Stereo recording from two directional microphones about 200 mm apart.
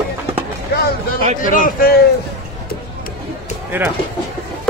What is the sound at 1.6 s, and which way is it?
Speech, 50° left (ahead or behind).